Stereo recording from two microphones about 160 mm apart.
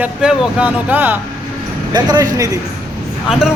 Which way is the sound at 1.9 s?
25° right (ahead or behind).